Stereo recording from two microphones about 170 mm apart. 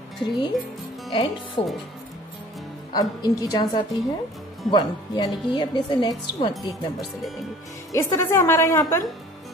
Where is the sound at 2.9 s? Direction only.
25° left (ahead or behind).